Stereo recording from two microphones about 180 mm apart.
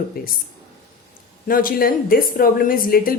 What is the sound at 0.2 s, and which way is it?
Speech, 55° left (ahead or behind).